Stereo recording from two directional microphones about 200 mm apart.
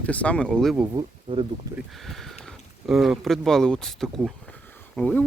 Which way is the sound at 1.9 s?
Centre (ahead or behind).